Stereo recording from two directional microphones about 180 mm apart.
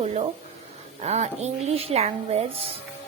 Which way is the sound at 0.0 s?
35° right (ahead or behind).